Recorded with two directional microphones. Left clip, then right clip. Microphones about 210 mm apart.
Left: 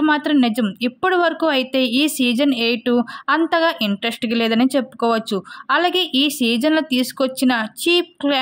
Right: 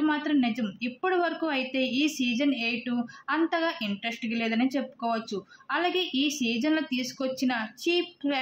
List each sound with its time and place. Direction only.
0.0 s a woman's voice: 50° left (ahead or behind)